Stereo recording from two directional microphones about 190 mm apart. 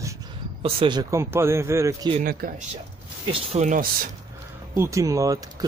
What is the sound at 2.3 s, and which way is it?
Speech, 50° right (ahead or behind).